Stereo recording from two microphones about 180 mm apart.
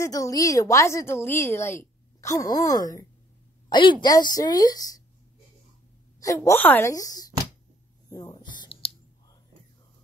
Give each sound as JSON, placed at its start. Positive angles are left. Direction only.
{"t": 0.0, "sound": "a woman's voice", "side_deg": 20}
{"t": 6.1, "sound": "a woman's voice", "side_deg": 20}
{"t": 8.1, "sound": "a sound", "side_deg": 20}